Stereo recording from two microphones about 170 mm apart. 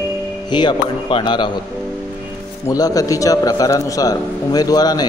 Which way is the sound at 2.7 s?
20° left (ahead or behind).